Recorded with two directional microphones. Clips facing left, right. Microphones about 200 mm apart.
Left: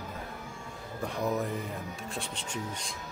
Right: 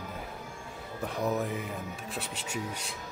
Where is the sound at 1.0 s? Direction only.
Centre (ahead or behind).